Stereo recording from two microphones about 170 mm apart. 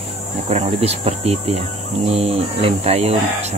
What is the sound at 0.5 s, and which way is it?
Speech, 35° right (ahead or behind).